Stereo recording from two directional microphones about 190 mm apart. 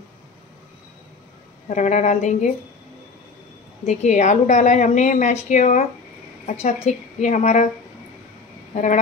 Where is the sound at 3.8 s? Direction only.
40° left (ahead or behind).